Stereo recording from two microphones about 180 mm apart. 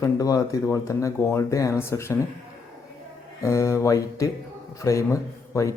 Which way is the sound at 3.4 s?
15° left (ahead or behind).